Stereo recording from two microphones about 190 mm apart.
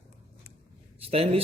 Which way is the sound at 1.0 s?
30° right (ahead or behind).